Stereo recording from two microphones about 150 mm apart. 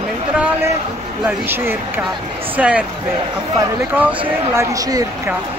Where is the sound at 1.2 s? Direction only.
15° right (ahead or behind).